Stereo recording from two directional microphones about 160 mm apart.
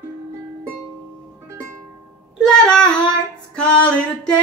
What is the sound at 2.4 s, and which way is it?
Child singing, 5° left (ahead or behind).